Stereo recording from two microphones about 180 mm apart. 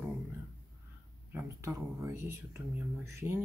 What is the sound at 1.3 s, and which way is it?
Speech, 15° right (ahead or behind).